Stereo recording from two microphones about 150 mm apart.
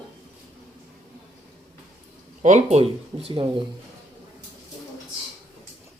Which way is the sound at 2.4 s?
50° right (ahead or behind).